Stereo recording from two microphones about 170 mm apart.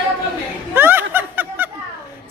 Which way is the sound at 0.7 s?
10° right (ahead or behind).